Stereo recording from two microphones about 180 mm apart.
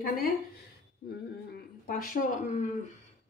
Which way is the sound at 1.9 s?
50° left (ahead or behind).